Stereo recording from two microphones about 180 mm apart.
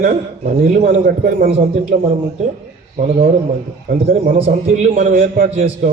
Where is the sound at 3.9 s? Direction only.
55° right (ahead or behind).